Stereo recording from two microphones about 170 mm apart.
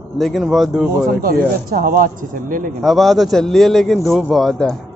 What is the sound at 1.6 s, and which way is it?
A man's voice, 55° right (ahead or behind).